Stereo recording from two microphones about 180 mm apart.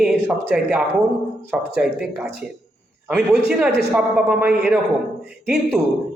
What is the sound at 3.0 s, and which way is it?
A man's voice, 5° right (ahead or behind).